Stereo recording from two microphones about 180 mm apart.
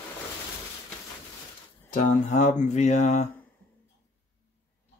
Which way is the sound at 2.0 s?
45° left (ahead or behind).